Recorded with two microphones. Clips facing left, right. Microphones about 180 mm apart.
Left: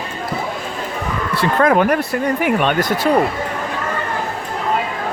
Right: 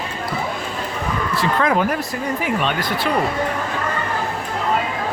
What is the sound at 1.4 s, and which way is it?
Speech, 55° left (ahead or behind).